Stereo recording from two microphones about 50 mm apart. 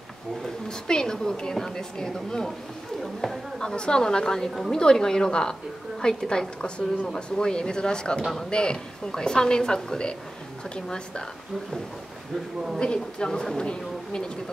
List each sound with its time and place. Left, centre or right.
0.7 s a woman's voice: centre
3.0 s speech: centre
3.5 s a woman's voice: centre
12.7 s a woman's voice: centre